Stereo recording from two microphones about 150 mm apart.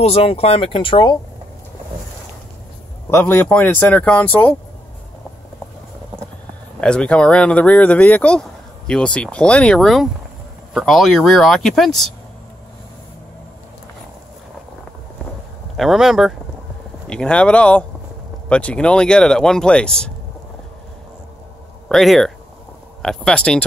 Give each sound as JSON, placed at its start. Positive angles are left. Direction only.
{"t": 0.0, "sound": "speech", "side_deg": 40}
{"t": 3.1, "sound": "speech", "side_deg": 15}
{"t": 6.8, "sound": "speech", "side_deg": 5}
{"t": 15.7, "sound": "speech", "side_deg": 0}
{"t": 21.8, "sound": "speech", "side_deg": 0}